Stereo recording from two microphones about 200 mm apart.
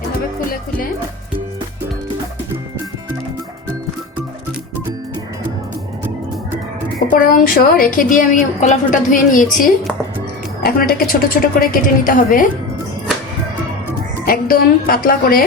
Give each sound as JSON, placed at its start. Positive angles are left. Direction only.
{"t": 7.1, "sound": "a woman's voice", "side_deg": 45}
{"t": 14.3, "sound": "a woman's voice", "side_deg": 45}